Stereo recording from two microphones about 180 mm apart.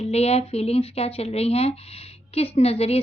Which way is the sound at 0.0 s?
35° left (ahead or behind).